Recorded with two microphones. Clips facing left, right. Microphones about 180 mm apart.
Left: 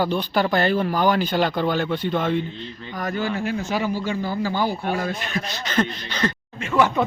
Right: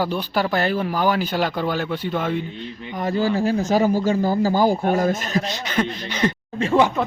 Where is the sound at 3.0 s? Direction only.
30° right (ahead or behind).